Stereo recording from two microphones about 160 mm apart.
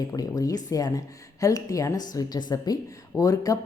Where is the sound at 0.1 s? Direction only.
20° left (ahead or behind).